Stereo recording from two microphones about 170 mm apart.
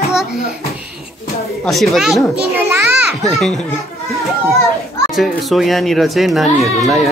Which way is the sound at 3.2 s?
Centre (ahead or behind).